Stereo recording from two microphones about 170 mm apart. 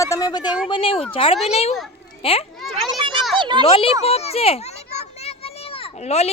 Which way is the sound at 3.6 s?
35° left (ahead or behind).